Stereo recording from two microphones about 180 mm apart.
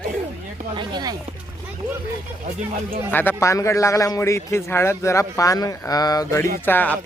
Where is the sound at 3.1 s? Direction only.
10° left (ahead or behind).